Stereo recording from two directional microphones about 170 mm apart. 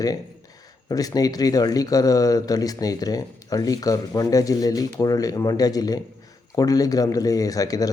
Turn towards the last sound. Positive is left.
turn(degrees=20)  # may be behind; listen again after turning